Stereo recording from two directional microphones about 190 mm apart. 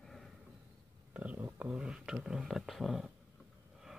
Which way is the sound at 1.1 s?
10° right (ahead or behind).